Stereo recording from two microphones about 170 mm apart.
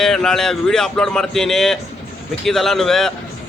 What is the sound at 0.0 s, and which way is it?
A man's voice, 5° left (ahead or behind).